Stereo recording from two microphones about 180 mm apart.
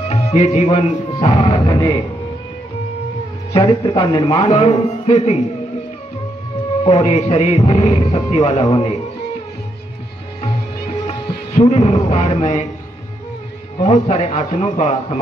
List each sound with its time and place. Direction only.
0.1 s music: 35° left (ahead or behind)
3.5 s speech: 25° left (ahead or behind)
4.5 s music: 35° left (ahead or behind)
6.8 s music: 35° left (ahead or behind)
11.1 s speech: 35° left (ahead or behind)
13.8 s music: 40° left (ahead or behind)